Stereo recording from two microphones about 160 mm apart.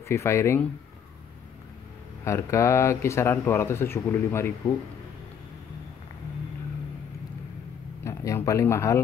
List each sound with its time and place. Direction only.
0.1 s speech: 15° left (ahead or behind)
2.2 s speech: 15° left (ahead or behind)
8.0 s speech: 20° left (ahead or behind)